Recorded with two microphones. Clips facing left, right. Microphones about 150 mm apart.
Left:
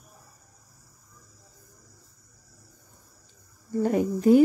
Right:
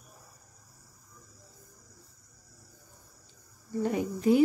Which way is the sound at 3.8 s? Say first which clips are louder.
Left 6 dB; 45° left (ahead or behind).